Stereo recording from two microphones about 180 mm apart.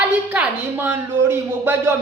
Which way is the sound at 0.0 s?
10° right (ahead or behind).